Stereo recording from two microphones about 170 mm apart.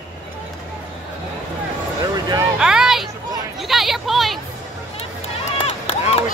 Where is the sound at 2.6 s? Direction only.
5° right (ahead or behind).